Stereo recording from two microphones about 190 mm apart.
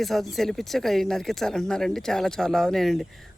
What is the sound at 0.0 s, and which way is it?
Speech, centre (ahead or behind).